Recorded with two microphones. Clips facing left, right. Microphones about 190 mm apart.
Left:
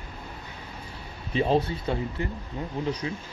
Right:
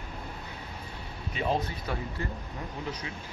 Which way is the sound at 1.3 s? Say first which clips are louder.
Left 6 dB; 30° left (ahead or behind).